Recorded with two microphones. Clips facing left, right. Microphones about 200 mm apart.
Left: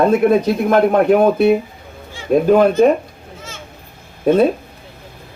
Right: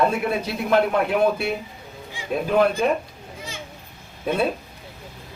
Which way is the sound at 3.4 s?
15° right (ahead or behind).